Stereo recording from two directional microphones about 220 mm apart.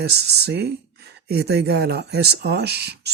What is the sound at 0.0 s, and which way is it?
Speech, 45° right (ahead or behind).